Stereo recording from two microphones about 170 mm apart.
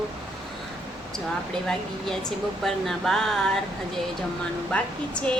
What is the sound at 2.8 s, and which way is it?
Speech, centre (ahead or behind).